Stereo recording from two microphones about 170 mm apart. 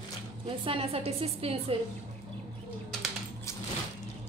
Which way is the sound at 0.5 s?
30° right (ahead or behind).